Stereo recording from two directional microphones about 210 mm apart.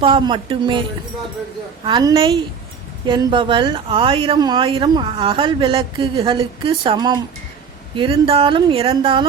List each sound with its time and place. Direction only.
0.0 s speech: 25° right (ahead or behind)